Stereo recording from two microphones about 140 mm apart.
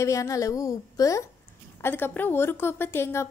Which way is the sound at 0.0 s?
20° left (ahead or behind).